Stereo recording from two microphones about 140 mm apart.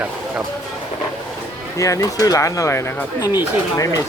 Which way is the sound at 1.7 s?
25° left (ahead or behind).